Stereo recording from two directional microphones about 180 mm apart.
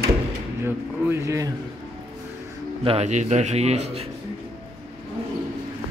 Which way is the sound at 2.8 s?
35° right (ahead or behind).